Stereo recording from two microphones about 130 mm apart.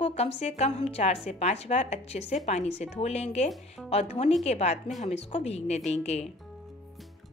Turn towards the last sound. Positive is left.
turn(degrees=55)  # may be behind; listen again after turning